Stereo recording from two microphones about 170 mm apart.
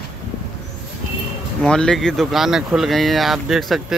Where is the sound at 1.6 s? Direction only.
5° left (ahead or behind).